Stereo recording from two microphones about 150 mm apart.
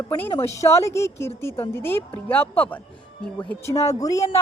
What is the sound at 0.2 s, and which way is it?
A woman's voice, 15° left (ahead or behind).